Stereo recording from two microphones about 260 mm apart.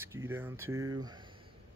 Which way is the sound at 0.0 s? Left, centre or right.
Centre.